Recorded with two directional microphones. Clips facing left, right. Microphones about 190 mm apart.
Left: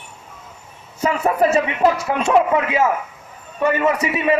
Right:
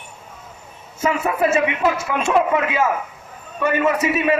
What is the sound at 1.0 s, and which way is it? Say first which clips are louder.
Speech: left 2 dB; 35° left (ahead or behind).